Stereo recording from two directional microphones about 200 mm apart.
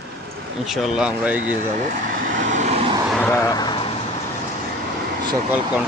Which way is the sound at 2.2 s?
40° right (ahead or behind).